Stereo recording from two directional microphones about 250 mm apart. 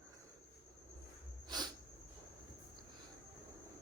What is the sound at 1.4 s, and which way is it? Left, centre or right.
Cricket, centre.